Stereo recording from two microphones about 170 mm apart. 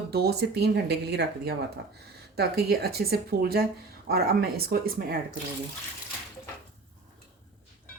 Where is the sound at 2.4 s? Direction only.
65° right (ahead or behind).